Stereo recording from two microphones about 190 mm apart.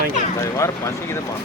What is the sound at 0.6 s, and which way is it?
Speech, 15° left (ahead or behind).